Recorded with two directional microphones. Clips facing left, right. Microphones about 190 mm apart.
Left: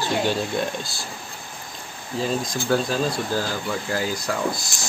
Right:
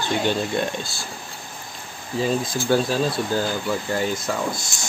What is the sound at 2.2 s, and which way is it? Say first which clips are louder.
Speech: right 2 dB; 5° right (ahead or behind).